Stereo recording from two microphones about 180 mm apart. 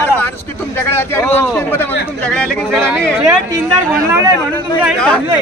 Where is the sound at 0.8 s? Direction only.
15° left (ahead or behind).